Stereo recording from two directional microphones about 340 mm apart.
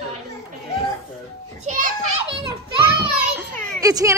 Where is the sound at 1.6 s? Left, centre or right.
Right.